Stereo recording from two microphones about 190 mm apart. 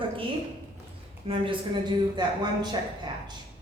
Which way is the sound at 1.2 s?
30° right (ahead or behind).